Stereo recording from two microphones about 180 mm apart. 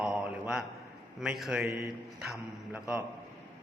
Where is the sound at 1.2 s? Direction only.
5° right (ahead or behind).